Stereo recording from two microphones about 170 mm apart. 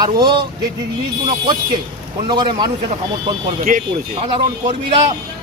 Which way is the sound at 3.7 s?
55° right (ahead or behind).